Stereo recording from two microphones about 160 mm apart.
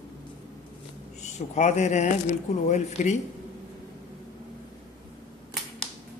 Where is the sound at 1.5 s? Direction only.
45° left (ahead or behind).